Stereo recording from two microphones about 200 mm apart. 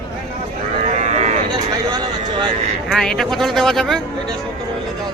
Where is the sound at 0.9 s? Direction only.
35° right (ahead or behind).